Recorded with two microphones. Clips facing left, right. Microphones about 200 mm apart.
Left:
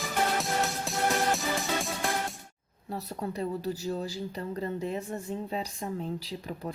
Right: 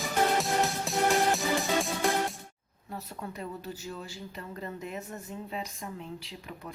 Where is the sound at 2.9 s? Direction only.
35° left (ahead or behind).